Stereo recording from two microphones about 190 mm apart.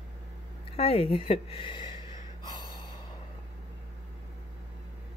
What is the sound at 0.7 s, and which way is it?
Speech, 30° left (ahead or behind).